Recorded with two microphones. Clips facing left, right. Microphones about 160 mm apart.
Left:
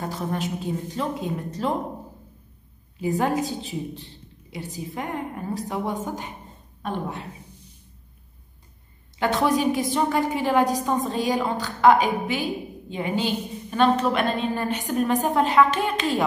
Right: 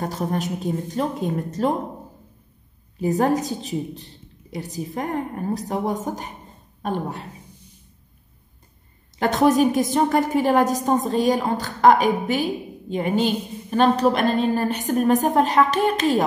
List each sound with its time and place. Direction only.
0.0 s a woman's voice: 45° right (ahead or behind)
3.0 s a woman's voice: 40° right (ahead or behind)
9.2 s a woman's voice: 45° right (ahead or behind)